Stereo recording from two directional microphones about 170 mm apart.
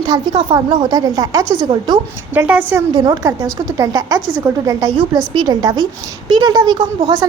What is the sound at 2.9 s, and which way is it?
A woman's voice, 20° right (ahead or behind).